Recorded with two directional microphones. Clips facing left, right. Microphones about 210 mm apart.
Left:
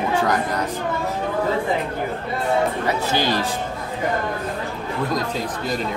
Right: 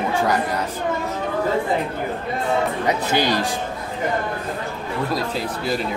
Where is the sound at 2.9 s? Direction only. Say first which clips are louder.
Right 1 dB; 15° right (ahead or behind).